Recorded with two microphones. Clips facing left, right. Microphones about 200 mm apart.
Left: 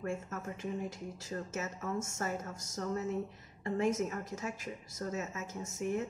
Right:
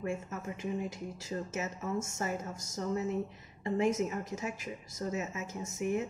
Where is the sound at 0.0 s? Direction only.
15° right (ahead or behind).